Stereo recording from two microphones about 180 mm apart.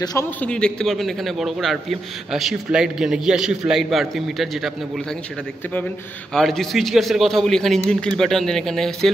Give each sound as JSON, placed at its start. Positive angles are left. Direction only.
{"t": 0.0, "sound": "a man's voice", "side_deg": 20}
{"t": 0.4, "sound": "a man's voice", "side_deg": 5}
{"t": 6.3, "sound": "a man's voice", "side_deg": 0}